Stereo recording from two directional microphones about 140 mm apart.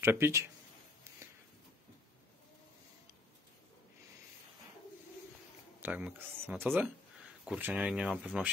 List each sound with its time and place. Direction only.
0.0 s speech: 20° right (ahead or behind)
5.8 s speech: 10° right (ahead or behind)